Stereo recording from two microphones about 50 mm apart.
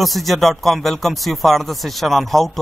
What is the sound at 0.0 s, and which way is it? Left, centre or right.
Speech, centre.